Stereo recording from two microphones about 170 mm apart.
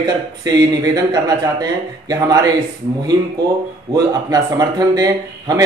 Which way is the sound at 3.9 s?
20° right (ahead or behind).